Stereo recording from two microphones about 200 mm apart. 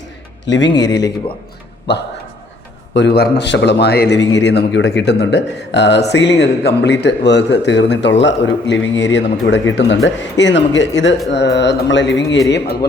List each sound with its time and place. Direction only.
0.4 s speech: 65° left (ahead or behind)